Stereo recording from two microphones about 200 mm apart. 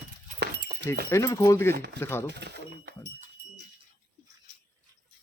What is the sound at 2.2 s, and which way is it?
Speech, 55° right (ahead or behind).